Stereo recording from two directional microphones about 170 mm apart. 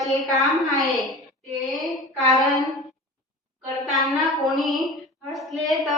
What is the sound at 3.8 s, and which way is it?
Speech, centre (ahead or behind).